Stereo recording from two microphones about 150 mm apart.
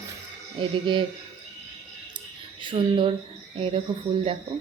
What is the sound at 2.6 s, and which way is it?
Speech, 35° right (ahead or behind).